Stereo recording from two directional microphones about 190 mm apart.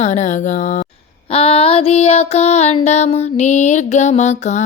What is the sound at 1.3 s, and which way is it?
Music, 30° left (ahead or behind).